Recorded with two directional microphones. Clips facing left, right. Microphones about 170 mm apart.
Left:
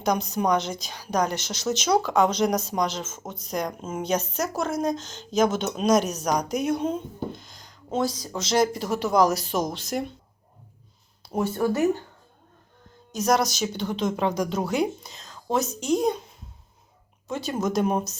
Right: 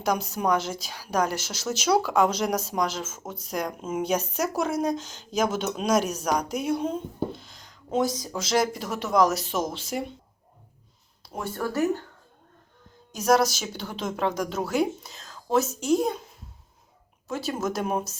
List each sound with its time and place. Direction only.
0.0 s a woman's voice: 5° right (ahead or behind)
7.3 s music: 5° right (ahead or behind)
7.9 s speech: 20° right (ahead or behind)
8.3 s a woman's voice: centre (ahead or behind)
11.3 s speech: 25° left (ahead or behind)
13.1 s a woman's voice: 5° right (ahead or behind)
17.2 s a woman's voice: 5° right (ahead or behind)